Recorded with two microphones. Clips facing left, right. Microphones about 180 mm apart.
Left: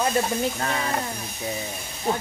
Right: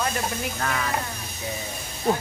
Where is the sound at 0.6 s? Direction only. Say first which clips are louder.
Left 1 dB; 25° left (ahead or behind).